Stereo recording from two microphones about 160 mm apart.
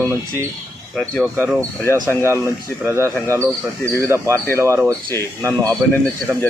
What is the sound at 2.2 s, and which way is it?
Speech, 15° right (ahead or behind).